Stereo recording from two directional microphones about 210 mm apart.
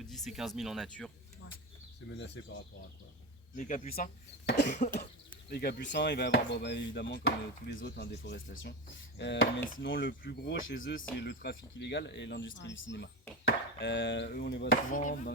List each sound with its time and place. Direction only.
0.0 s speech: centre (ahead or behind)
2.1 s speech: 55° left (ahead or behind)
3.5 s speech: 40° left (ahead or behind)
4.4 s speech: 55° left (ahead or behind)
11.2 s speech: 55° left (ahead or behind)